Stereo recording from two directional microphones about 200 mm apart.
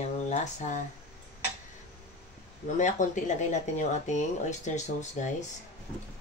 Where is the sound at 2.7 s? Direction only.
40° left (ahead or behind).